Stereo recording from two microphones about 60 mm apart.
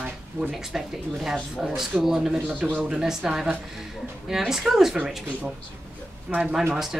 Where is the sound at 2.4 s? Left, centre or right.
Right.